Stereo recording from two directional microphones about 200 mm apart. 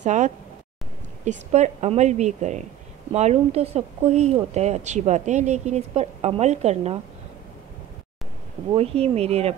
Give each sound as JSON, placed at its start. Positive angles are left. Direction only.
{"t": 0.0, "sound": "speech", "side_deg": -35}
{"t": 8.7, "sound": "speech", "side_deg": -30}